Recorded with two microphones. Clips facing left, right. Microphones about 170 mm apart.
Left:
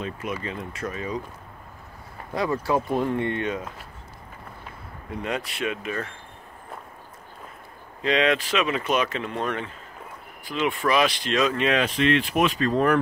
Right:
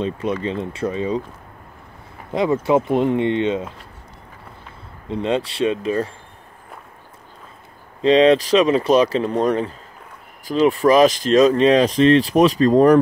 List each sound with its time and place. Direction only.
0.0 s speech: 30° right (ahead or behind)
2.3 s speech: 20° right (ahead or behind)
5.0 s speech: 25° right (ahead or behind)
8.0 s speech: 30° right (ahead or behind)